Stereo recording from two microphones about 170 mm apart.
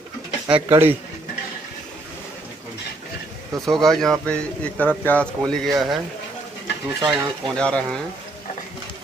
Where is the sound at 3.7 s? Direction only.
Centre (ahead or behind).